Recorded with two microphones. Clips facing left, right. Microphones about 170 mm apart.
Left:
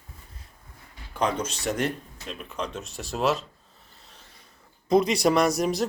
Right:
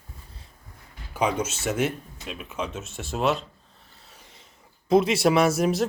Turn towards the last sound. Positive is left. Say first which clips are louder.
# right 2 dB
turn(degrees=0)  # may be behind; listen again after turning